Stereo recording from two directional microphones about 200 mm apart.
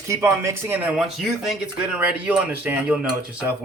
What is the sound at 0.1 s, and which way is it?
Speech, 15° right (ahead or behind).